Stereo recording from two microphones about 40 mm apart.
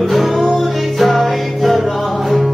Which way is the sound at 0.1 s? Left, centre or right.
Centre.